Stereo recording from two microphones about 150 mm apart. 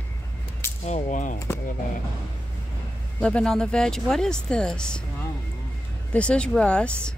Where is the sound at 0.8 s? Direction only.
50° left (ahead or behind).